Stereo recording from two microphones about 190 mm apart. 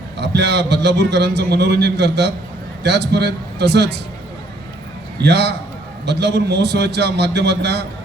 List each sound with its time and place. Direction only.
0.2 s a man's voice: 60° right (ahead or behind)
5.2 s a man's voice: 60° right (ahead or behind)